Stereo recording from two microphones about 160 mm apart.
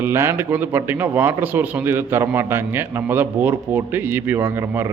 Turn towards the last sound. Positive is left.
turn(degrees=-15)  # may be behind; listen again after turning